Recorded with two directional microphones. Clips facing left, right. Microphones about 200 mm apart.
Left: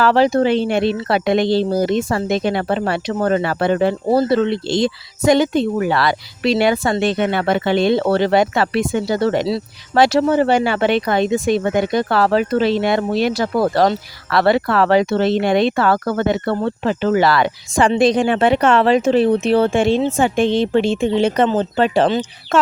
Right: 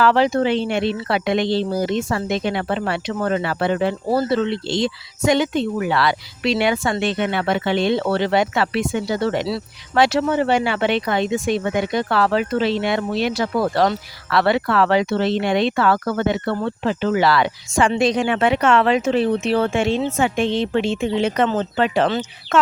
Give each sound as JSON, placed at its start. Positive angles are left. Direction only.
{"t": 0.0, "sound": "speech", "side_deg": 35}